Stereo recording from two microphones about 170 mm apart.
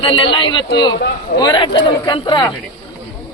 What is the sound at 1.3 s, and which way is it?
A woman's voice, 25° left (ahead or behind).